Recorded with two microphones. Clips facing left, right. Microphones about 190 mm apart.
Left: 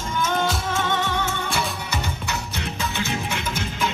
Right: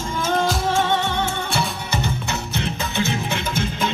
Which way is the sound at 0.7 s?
30° right (ahead or behind).